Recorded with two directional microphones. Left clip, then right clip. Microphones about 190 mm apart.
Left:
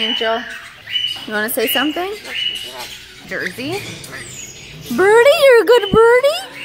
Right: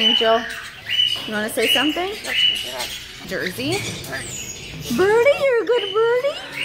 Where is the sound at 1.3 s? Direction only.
45° left (ahead or behind).